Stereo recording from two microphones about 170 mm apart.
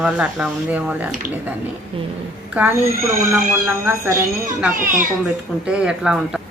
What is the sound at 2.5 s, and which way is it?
Speech, 15° right (ahead or behind).